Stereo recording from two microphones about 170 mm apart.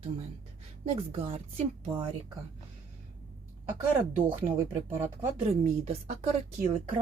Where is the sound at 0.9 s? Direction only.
35° right (ahead or behind).